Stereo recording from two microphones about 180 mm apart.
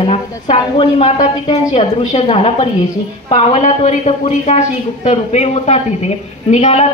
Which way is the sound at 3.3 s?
40° left (ahead or behind).